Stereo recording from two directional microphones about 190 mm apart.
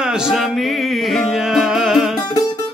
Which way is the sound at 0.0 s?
5° right (ahead or behind).